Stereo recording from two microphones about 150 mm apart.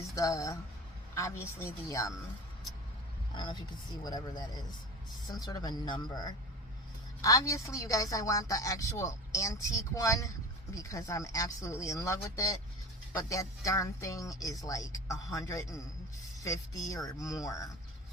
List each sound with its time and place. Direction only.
0.1 s a woman's voice: 20° left (ahead or behind)
3.3 s a woman's voice: 30° left (ahead or behind)